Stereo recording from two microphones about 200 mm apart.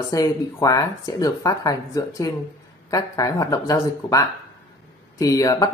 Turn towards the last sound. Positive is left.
turn(degrees=15)  # may be behind; listen again after turning